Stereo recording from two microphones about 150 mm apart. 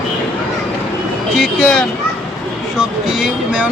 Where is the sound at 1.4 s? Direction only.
5° left (ahead or behind).